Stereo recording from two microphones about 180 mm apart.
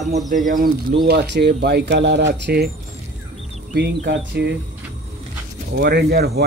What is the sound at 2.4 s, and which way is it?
Speech, 60° right (ahead or behind).